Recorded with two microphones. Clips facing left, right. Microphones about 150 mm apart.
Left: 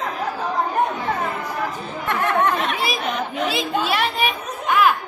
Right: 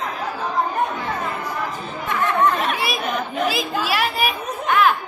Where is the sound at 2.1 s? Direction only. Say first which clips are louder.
Left 1 dB; 70° left (ahead or behind).